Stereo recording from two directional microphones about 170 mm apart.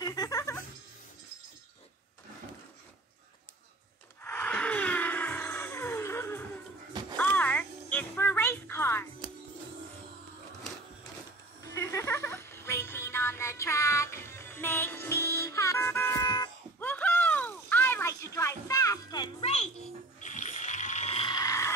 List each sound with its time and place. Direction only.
0.0 s music: 20° left (ahead or behind)
4.2 s wail: 10° left (ahead or behind)
7.2 s music: 10° left (ahead or behind)
11.6 s music: 20° left (ahead or behind)
16.8 s a sound: 10° left (ahead or behind)
19.4 s music: 40° left (ahead or behind)
20.2 s water: 45° left (ahead or behind)
21.4 s a sound: 20° left (ahead or behind)